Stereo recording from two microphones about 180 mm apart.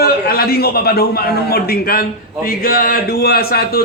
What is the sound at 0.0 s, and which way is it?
A man's voice, 55° left (ahead or behind).